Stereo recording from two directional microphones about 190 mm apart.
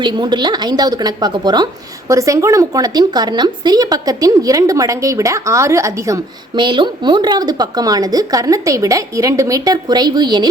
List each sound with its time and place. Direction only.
0.0 s speech: 25° right (ahead or behind)